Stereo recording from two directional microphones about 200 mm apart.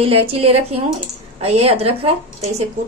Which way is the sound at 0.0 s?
30° right (ahead or behind).